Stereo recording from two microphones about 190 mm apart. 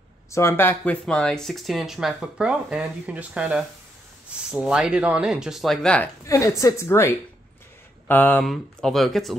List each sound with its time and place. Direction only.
0.3 s speech: 15° left (ahead or behind)
6.2 s a woman's voice: 15° left (ahead or behind); by 9.4 s centre (ahead or behind)